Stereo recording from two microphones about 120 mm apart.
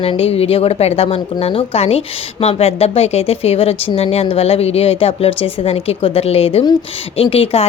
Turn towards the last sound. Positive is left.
turn(degrees=50)  # may be behind; listen again after turning